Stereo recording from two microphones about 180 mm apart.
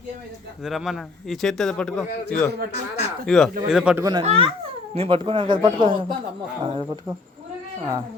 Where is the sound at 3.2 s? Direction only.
Centre (ahead or behind).